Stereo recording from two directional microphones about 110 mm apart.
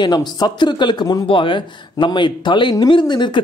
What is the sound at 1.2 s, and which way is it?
Speech, 50° left (ahead or behind).